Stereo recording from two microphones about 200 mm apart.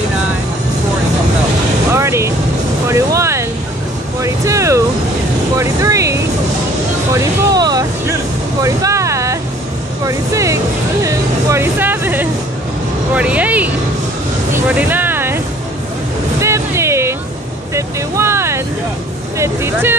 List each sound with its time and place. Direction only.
1.9 s vehicle: 15° right (ahead or behind)
2.9 s a sound: 15° right (ahead or behind)
4.2 s vehicle: 15° right (ahead or behind)
7.1 s a sound: 15° right (ahead or behind)
8.6 s vehicle: 15° right (ahead or behind)
10.0 s music: 15° right (ahead or behind)
11.1 s vehicle: 15° right (ahead or behind)
14.5 s a sound: 10° right (ahead or behind)
16.3 s music: 15° right (ahead or behind)
17.7 s vehicle: 15° right (ahead or behind)